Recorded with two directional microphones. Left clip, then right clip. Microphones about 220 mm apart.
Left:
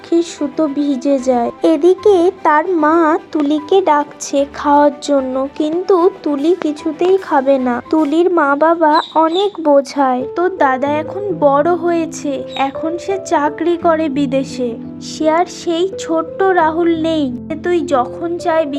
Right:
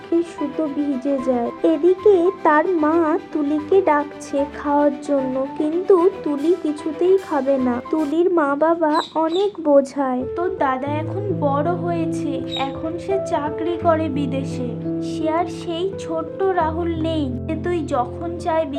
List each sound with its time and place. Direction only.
0.2 s speech: 20° left (ahead or behind)